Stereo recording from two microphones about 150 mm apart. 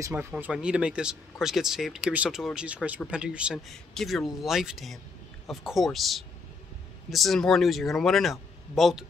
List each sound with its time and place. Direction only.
0.1 s speech: 10° right (ahead or behind)